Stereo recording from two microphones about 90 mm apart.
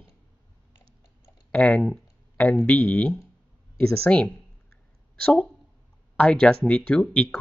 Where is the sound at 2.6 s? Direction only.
15° left (ahead or behind).